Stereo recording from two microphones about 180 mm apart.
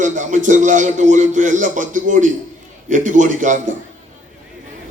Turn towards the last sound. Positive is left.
turn(degrees=-45)  # may be behind; listen again after turning